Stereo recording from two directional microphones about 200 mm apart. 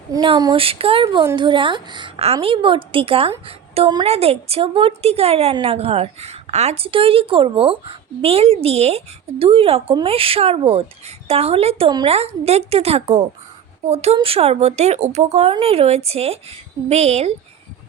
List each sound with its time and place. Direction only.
0.1 s a woman's voice: 20° right (ahead or behind)